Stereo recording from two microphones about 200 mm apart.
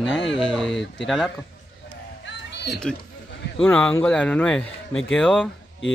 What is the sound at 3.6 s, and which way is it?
Speech, 5° left (ahead or behind).